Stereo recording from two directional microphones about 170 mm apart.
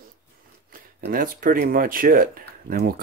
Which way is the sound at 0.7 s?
55° right (ahead or behind).